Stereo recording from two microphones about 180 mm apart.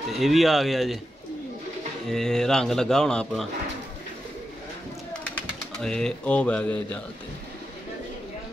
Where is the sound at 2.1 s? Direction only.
Centre (ahead or behind).